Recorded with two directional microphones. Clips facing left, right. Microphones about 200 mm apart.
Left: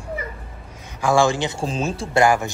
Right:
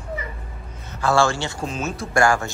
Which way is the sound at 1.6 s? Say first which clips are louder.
Left 3 dB; 30° left (ahead or behind).